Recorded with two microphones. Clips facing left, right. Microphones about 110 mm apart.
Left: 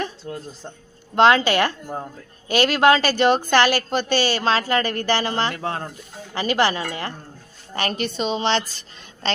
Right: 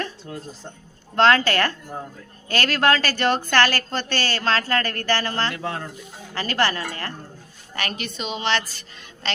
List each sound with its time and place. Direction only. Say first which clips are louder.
1.1 s a woman's voice: left 2 dB; 15° left (ahead or behind)
5.6 s a woman's voice: left 2 dB; 35° left (ahead or behind)
6.3 s a woman's voice: left 3 dB; 15° left (ahead or behind)
7.8 s a woman's voice: left 6 dB; 35° left (ahead or behind)
9.2 s duck: left 4 dB; 30° left (ahead or behind)